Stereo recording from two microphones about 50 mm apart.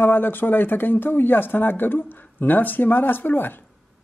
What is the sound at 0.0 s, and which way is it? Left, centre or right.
Speech, left.